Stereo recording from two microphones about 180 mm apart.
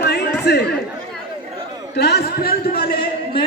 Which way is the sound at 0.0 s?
65° left (ahead or behind).